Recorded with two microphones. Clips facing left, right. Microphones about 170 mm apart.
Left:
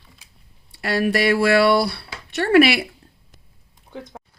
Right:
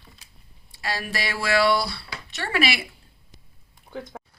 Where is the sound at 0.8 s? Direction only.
60° left (ahead or behind).